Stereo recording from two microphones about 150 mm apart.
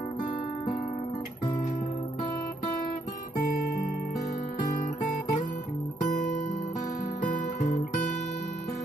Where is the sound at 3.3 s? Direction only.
75° left (ahead or behind).